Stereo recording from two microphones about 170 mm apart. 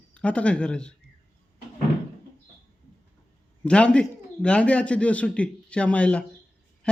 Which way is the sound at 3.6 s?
5° left (ahead or behind).